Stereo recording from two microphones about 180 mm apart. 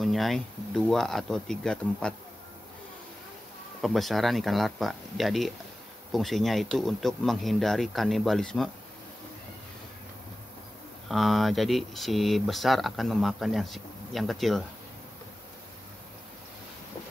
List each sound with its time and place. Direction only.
0.0 s speech: centre (ahead or behind)
3.8 s speech: centre (ahead or behind)
11.1 s speech: centre (ahead or behind)